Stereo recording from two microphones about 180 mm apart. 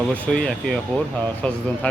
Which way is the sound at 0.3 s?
5° left (ahead or behind).